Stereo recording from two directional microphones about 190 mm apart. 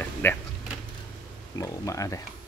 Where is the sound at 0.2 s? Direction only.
10° left (ahead or behind).